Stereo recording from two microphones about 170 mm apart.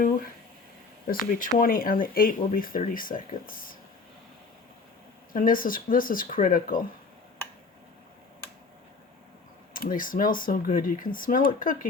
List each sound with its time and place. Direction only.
1.0 s speech: 55° left (ahead or behind)
5.3 s speech: 55° left (ahead or behind)
9.7 s speech: 55° left (ahead or behind)